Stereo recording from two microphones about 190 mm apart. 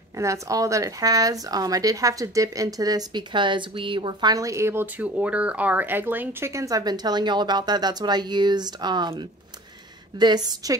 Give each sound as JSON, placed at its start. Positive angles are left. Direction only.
{"t": 0.2, "sound": "speech", "side_deg": -15}